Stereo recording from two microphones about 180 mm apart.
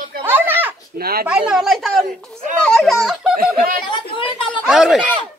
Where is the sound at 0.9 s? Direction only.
55° right (ahead or behind).